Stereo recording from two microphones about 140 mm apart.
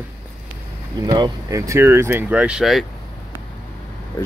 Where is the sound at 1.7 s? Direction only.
20° right (ahead or behind).